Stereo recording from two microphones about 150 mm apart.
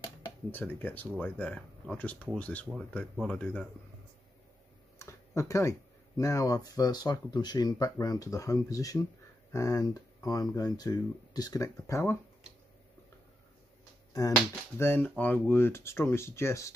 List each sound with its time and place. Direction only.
0.5 s speech: 15° left (ahead or behind)
4.9 s speech: 20° left (ahead or behind)
14.1 s speech: 20° left (ahead or behind)